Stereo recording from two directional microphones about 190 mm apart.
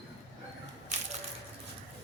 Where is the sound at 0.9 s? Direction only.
40° right (ahead or behind).